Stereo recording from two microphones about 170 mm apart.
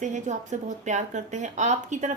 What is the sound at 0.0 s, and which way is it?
A woman's voice, 45° right (ahead or behind).